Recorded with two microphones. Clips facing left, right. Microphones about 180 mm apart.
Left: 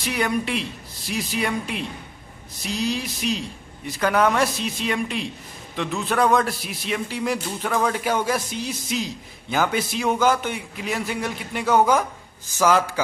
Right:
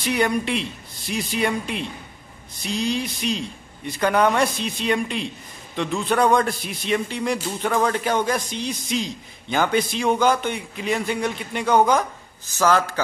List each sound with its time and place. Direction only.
0.0 s a man's voice: centre (ahead or behind)